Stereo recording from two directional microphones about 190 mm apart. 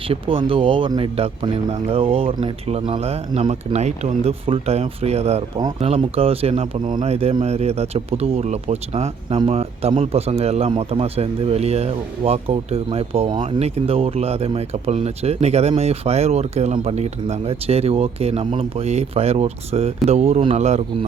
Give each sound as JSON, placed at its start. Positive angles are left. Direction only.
{"t": 0.1, "sound": "speech", "side_deg": -30}